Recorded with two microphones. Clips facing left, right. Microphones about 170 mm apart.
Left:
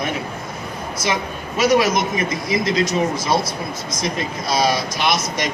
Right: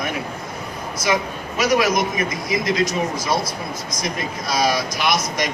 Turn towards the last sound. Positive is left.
turn(degrees=25)  # may be behind; listen again after turning